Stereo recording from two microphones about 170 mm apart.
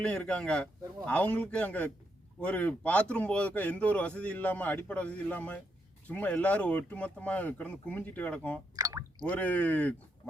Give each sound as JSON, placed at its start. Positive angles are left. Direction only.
{"t": 0.0, "sound": "a man's voice", "side_deg": 5}
{"t": 8.7, "sound": "drip", "side_deg": -20}
{"t": 9.2, "sound": "a man's voice", "side_deg": 10}